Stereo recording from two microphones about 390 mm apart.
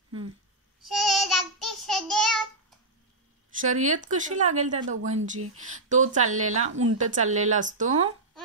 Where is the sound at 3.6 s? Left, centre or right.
Centre.